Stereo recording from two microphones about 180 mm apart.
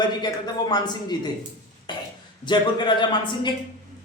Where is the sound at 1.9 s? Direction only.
25° left (ahead or behind).